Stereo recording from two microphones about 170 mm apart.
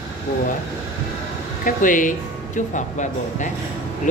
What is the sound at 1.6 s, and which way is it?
A man's voice, 50° left (ahead or behind).